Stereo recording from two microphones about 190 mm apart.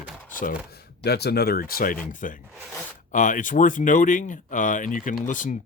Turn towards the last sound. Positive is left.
turn(degrees=40)  # may be behind; listen again after turning